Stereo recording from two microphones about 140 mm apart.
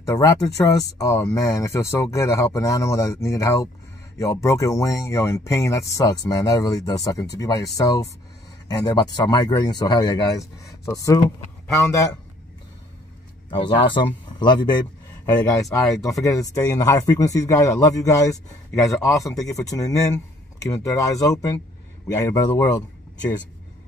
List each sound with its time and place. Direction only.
0.0 s a man's voice: 20° left (ahead or behind)
13.5 s a man's voice: 35° left (ahead or behind)